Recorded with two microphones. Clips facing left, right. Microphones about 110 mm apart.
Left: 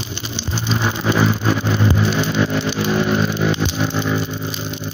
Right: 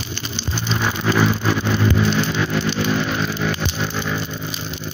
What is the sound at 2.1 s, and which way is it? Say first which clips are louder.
Vehicle: left 2 dB; 15° left (ahead or behind).